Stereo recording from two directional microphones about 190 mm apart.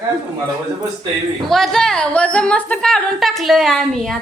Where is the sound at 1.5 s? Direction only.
Centre (ahead or behind).